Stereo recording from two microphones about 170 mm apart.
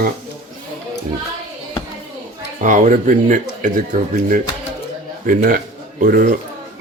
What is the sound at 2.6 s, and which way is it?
Speech, 50° right (ahead or behind).